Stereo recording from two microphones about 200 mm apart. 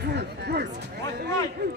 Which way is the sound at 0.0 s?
55° right (ahead or behind).